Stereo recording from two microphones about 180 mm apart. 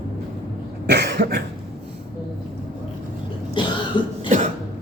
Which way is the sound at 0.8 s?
65° right (ahead or behind).